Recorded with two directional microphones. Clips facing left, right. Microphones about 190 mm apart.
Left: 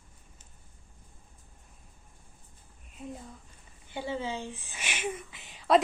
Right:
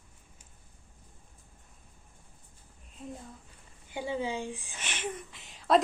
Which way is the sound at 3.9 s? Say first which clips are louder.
Right 1 dB; 10° right (ahead or behind).